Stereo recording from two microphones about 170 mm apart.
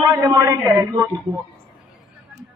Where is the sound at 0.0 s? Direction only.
20° right (ahead or behind).